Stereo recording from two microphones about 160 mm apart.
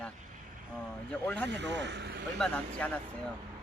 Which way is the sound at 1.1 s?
10° left (ahead or behind).